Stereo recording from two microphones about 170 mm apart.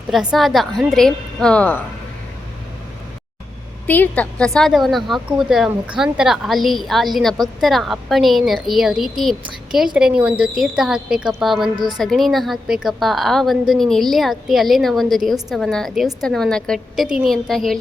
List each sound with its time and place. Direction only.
0.1 s a woman's voice: 5° right (ahead or behind)
3.8 s a woman's voice: 10° left (ahead or behind)